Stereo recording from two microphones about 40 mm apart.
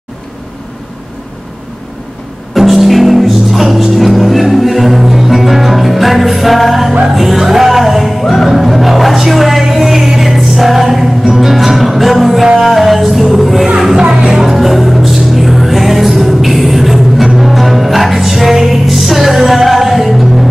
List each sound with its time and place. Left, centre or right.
2.5 s music: centre
14.0 s music: centre
14.4 s music: centre